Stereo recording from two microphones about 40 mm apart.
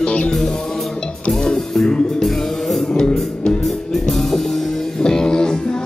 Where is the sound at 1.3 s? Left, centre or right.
Centre.